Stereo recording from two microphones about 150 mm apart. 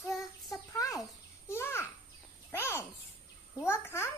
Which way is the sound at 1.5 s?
15° left (ahead or behind).